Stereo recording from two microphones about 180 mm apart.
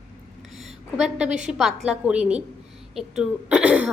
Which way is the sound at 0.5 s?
Centre (ahead or behind).